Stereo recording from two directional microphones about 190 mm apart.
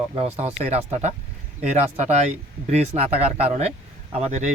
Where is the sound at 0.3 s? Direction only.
35° right (ahead or behind).